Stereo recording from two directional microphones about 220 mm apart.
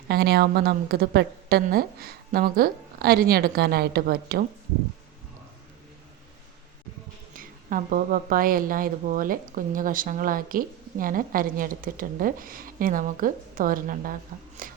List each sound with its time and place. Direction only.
0.1 s a woman's voice: 45° right (ahead or behind)
7.3 s a woman's voice: 40° right (ahead or behind)